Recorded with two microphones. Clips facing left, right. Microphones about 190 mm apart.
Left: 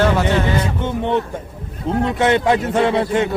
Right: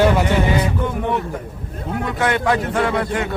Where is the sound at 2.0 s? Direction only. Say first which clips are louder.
Left 3 dB; 25° left (ahead or behind).